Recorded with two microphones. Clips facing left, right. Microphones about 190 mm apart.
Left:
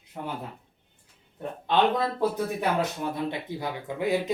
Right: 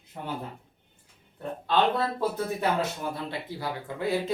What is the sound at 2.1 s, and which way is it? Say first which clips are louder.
Speech: left 2 dB; 15° left (ahead or behind).